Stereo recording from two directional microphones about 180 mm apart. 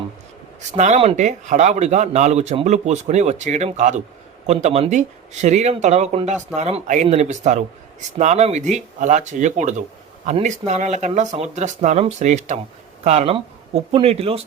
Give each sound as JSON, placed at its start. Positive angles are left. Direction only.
{"t": 0.8, "sound": "speech", "side_deg": -35}